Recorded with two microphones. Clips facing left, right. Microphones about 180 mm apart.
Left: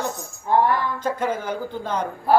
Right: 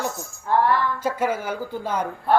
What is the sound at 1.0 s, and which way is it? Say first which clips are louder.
Speech: even; 10° right (ahead or behind).